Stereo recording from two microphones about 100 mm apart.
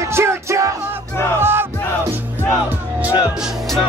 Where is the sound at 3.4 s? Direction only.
Centre (ahead or behind).